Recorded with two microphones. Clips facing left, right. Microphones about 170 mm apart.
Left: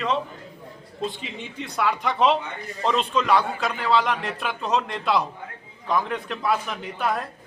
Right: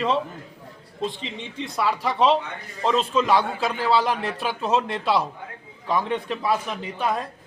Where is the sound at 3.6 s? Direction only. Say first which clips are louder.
Right 1 dB; 35° right (ahead or behind).